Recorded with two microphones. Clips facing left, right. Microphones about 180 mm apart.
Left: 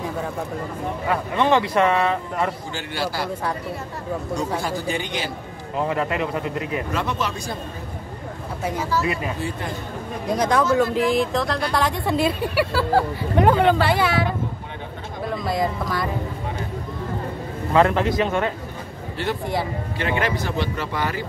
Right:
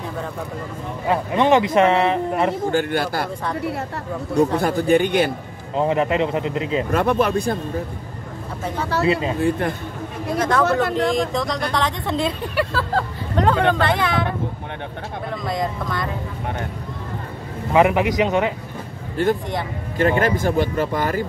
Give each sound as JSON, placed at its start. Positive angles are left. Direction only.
{"t": 1.0, "sound": "speech", "side_deg": -20}
{"t": 2.7, "sound": "speech", "side_deg": -55}
{"t": 4.6, "sound": "speech", "side_deg": -55}
{"t": 5.8, "sound": "speech", "side_deg": -20}
{"t": 6.9, "sound": "speech", "side_deg": -55}
{"t": 9.0, "sound": "speech", "side_deg": -30}
{"t": 10.3, "sound": "speech", "side_deg": 15}
{"t": 10.6, "sound": "speech", "side_deg": -65}
{"t": 11.0, "sound": "speech", "side_deg": 5}
{"t": 15.4, "sound": "speech", "side_deg": 5}
{"t": 17.7, "sound": "a man's voice", "side_deg": -15}
{"t": 19.2, "sound": "speech", "side_deg": -50}